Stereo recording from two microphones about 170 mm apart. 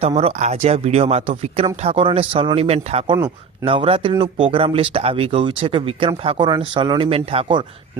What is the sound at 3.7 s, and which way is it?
Speech, 35° right (ahead or behind).